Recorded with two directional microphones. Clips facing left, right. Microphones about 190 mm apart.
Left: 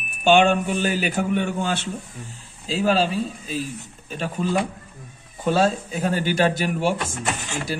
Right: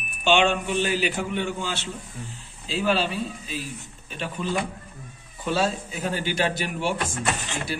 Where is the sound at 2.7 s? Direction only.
40° left (ahead or behind).